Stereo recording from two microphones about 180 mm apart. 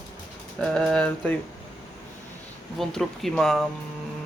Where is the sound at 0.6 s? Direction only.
Centre (ahead or behind).